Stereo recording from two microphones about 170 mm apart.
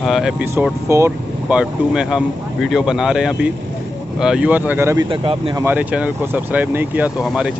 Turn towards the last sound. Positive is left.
turn(degrees=-5)  # may be behind; listen again after turning